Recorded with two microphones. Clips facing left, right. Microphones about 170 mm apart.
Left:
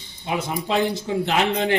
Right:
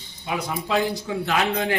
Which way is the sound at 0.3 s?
25° left (ahead or behind).